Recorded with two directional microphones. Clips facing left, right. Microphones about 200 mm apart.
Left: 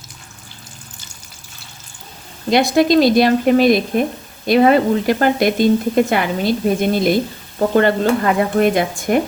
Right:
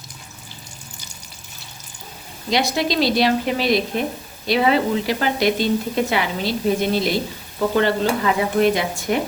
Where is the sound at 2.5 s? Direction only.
50° left (ahead or behind).